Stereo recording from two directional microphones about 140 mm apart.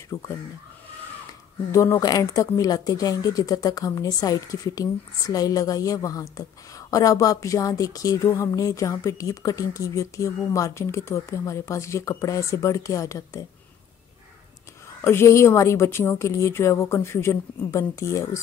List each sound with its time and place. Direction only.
0.1 s speech: 25° left (ahead or behind)
1.7 s speech: 20° left (ahead or behind)
15.0 s speech: 15° left (ahead or behind)